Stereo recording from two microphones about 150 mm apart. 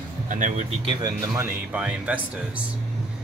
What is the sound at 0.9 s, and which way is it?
Speech, 25° right (ahead or behind).